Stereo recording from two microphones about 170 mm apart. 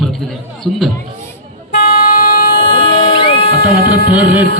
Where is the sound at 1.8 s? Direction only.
60° left (ahead or behind).